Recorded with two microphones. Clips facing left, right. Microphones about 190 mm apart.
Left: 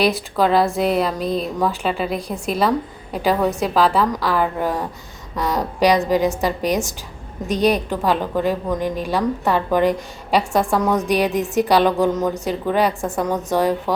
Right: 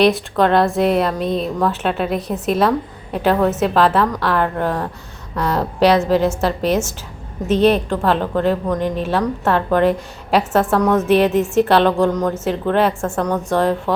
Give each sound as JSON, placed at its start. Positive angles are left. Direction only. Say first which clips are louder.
{"t": 0.0, "sound": "a woman's voice", "louder": "right 3 dB", "side_deg": 5}
{"t": 7.4, "sound": "a woman's voice", "louder": "right 4 dB", "side_deg": 0}
{"t": 11.6, "sound": "speech", "louder": "even", "side_deg": 15}
{"t": 12.2, "sound": "a woman's voice", "louder": "right 2 dB", "side_deg": 0}
{"t": 13.0, "sound": "speech", "louder": "right 2 dB", "side_deg": 15}
{"t": 13.2, "sound": "a woman's voice", "louder": "right 1 dB", "side_deg": 0}